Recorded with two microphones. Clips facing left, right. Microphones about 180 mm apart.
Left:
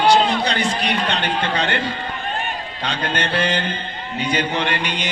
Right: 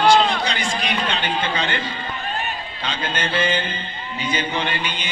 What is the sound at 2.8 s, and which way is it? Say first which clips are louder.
A man's voice: left 2 dB; 70° left (ahead or behind).